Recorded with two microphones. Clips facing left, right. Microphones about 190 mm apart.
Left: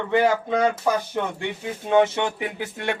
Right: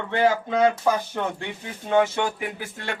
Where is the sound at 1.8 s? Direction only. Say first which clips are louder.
Left 2 dB; 20° left (ahead or behind).